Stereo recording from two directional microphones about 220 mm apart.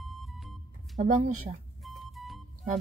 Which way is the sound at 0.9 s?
35° right (ahead or behind).